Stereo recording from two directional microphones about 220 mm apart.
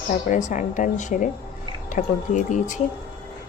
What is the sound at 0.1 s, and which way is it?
Speech, 35° left (ahead or behind).